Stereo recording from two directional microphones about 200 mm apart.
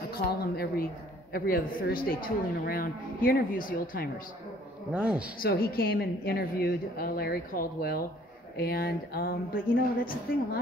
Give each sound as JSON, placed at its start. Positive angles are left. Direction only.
{"t": 0.1, "sound": "speech", "side_deg": 50}
{"t": 5.4, "sound": "speech", "side_deg": 50}